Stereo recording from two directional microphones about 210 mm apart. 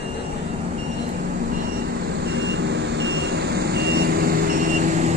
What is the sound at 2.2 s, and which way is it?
Vehicle, 55° right (ahead or behind).